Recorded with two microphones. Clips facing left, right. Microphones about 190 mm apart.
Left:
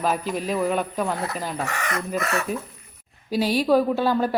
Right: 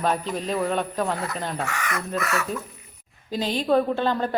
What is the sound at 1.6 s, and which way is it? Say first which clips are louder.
Speech: left 1 dB; 35° left (ahead or behind).